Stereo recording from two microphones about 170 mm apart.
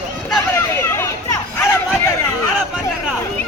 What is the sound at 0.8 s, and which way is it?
Chatter, 15° left (ahead or behind).